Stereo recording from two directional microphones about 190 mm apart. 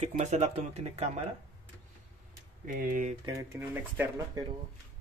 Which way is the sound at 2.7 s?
45° right (ahead or behind).